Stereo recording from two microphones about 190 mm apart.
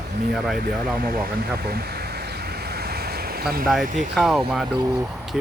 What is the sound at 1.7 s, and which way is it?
Ocean, 55° right (ahead or behind).